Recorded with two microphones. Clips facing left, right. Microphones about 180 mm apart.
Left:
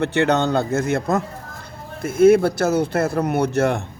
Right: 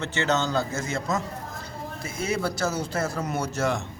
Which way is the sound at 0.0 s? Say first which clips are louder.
Left 7 dB; 60° left (ahead or behind).